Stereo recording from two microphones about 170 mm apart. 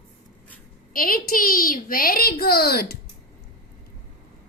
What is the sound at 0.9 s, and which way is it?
A child's voice, 55° left (ahead or behind).